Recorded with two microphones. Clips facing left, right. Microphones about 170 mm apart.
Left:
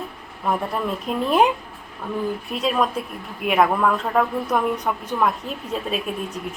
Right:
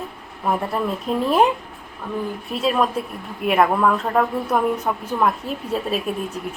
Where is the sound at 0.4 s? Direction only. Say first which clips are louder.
Right 1 dB; centre (ahead or behind).